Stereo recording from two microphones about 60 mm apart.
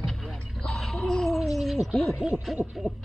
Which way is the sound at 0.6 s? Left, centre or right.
Centre.